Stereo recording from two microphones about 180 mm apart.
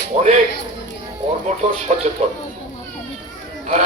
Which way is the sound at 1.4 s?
40° right (ahead or behind).